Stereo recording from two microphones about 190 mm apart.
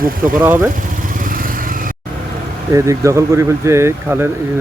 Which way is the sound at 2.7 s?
15° right (ahead or behind).